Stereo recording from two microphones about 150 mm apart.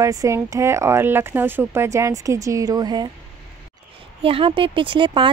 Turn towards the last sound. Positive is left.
turn(degrees=-35)  # may be behind; listen again after turning